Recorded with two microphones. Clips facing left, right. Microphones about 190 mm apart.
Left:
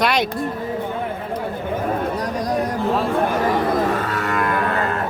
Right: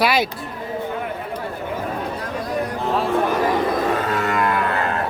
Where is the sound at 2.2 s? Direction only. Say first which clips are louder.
Left 3 dB; 40° left (ahead or behind).